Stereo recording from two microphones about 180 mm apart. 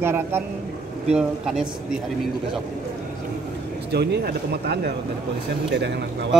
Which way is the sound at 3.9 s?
65° right (ahead or behind).